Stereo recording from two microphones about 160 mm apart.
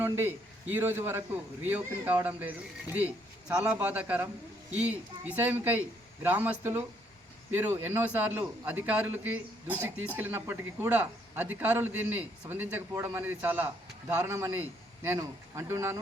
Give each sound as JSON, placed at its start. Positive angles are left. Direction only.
{"t": 0.0, "sound": "a man's voice", "side_deg": -15}
{"t": 3.5, "sound": "a man's voice", "side_deg": -10}